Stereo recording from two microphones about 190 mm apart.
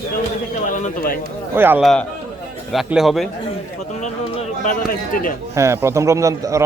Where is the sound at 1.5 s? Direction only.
10° right (ahead or behind).